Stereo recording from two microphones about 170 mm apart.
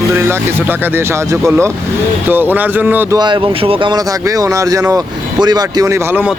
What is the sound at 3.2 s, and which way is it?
Speech, 25° right (ahead or behind).